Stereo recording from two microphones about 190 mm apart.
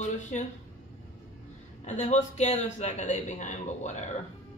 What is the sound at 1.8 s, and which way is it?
A man's voice, 40° left (ahead or behind).